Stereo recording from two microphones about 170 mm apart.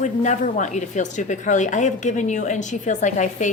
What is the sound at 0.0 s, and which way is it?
A woman's voice, 45° left (ahead or behind).